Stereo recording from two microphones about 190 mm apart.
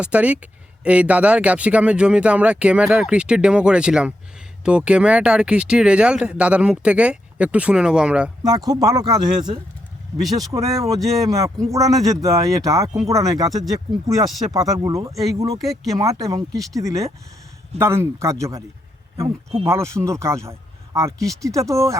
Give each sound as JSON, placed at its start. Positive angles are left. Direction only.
{"t": 0.0, "sound": "speech", "side_deg": -5}
{"t": 8.4, "sound": "speech", "side_deg": -20}
{"t": 14.5, "sound": "speech", "side_deg": -20}
{"t": 15.1, "sound": "speech", "side_deg": 0}
{"t": 15.9, "sound": "speech", "side_deg": -20}
{"t": 19.6, "sound": "speech", "side_deg": -15}